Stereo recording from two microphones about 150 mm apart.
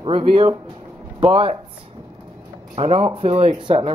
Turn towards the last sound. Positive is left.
turn(degrees=-35)  # may be behind; listen again after turning